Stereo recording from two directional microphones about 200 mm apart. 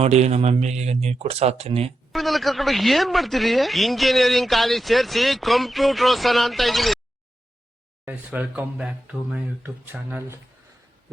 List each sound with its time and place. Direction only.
0.0 s speech: 35° right (ahead or behind)
2.1 s speech: centre (ahead or behind)
8.0 s speech: 10° right (ahead or behind)